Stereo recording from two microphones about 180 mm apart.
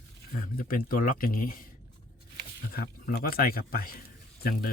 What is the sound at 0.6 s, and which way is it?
Speech, 55° left (ahead or behind).